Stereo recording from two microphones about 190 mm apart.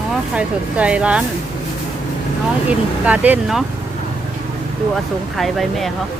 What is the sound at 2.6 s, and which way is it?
Speech, 10° right (ahead or behind).